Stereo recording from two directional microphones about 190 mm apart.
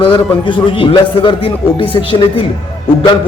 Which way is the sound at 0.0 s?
25° left (ahead or behind).